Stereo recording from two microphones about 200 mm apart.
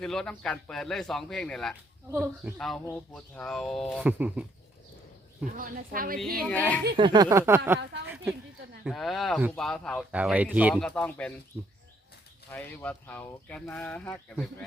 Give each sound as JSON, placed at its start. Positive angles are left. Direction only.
{"t": 0.0, "sound": "speech", "side_deg": 5}
{"t": 5.5, "sound": "a woman's voice", "side_deg": -45}
{"t": 6.1, "sound": "speech", "side_deg": 0}
{"t": 6.9, "sound": "a sound", "side_deg": -25}
{"t": 8.8, "sound": "speech", "side_deg": 0}
{"t": 10.1, "sound": "a sound", "side_deg": -5}
{"t": 10.8, "sound": "speech", "side_deg": 5}
{"t": 12.5, "sound": "speech", "side_deg": 10}